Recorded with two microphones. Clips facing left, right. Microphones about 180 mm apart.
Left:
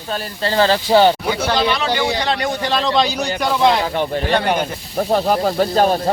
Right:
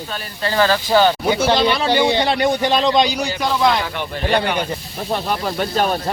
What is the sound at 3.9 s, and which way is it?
Speech, 40° left (ahead or behind).